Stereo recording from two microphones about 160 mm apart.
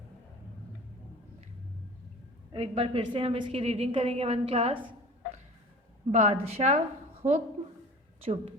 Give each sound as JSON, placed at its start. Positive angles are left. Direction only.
{"t": 2.5, "sound": "a woman's voice", "side_deg": -40}
{"t": 6.1, "sound": "a woman's voice", "side_deg": -45}